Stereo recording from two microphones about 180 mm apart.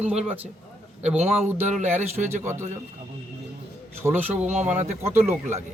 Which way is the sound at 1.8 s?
40° right (ahead or behind).